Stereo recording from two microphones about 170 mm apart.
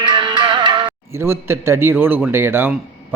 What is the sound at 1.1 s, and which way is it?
A man's voice, 15° right (ahead or behind).